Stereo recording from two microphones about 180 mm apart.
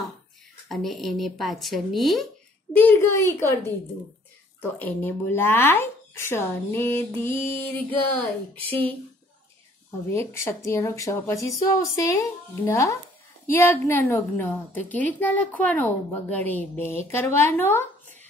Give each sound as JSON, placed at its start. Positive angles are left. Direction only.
{"t": 0.7, "sound": "a woman's voice", "side_deg": 0}
{"t": 10.0, "sound": "a woman's voice", "side_deg": 15}